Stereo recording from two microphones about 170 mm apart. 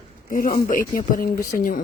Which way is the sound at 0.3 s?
55° left (ahead or behind).